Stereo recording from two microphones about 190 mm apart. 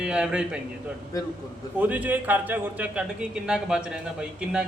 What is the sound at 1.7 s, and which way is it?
A man's voice, 10° right (ahead or behind).